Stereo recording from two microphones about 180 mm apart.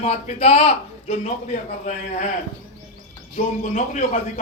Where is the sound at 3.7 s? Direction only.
40° left (ahead or behind).